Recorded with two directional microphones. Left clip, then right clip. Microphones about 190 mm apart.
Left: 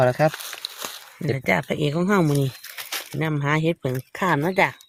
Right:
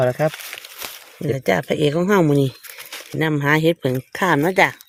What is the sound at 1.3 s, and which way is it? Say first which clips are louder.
Speech: right 3 dB; 45° right (ahead or behind).